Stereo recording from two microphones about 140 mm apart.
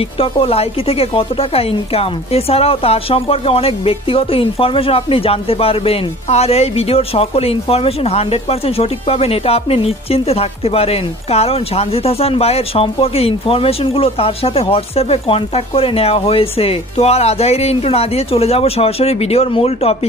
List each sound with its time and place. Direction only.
0.2 s speech: 45° left (ahead or behind)